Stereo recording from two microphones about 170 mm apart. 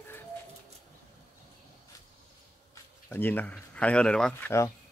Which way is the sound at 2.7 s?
10° left (ahead or behind).